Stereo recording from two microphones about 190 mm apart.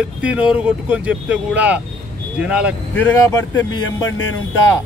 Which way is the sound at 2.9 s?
10° left (ahead or behind).